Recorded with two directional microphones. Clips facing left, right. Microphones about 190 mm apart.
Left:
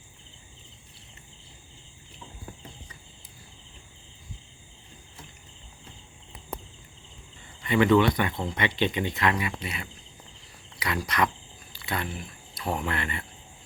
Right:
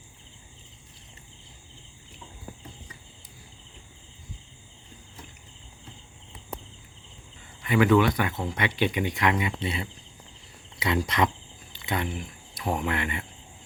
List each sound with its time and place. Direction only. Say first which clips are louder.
7.7 s speech: even; 5° right (ahead or behind)